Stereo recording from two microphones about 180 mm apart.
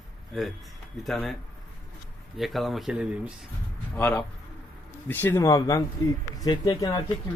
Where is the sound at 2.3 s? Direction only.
Centre (ahead or behind).